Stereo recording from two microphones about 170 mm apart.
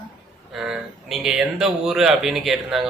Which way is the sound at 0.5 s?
5° right (ahead or behind).